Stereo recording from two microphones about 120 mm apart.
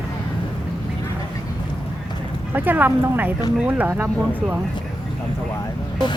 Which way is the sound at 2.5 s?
15° right (ahead or behind).